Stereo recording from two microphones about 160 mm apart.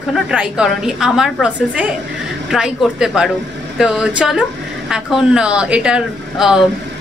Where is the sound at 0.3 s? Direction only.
5° right (ahead or behind).